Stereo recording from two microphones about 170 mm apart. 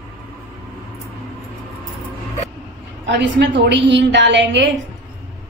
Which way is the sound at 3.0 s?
90° right.